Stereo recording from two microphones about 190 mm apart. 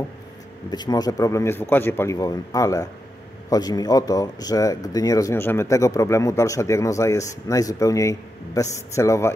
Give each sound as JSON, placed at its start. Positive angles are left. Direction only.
{"t": 0.7, "sound": "speech", "side_deg": 20}